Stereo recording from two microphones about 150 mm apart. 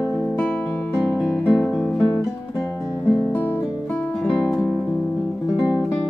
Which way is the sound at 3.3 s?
10° left (ahead or behind).